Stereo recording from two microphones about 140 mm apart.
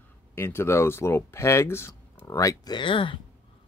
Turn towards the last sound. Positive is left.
turn(degrees=35)  # may be behind; listen again after turning